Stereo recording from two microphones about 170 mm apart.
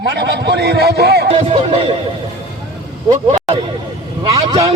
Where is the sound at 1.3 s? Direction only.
35° right (ahead or behind).